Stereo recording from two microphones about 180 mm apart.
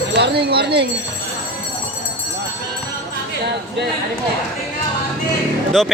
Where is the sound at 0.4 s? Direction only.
65° right (ahead or behind).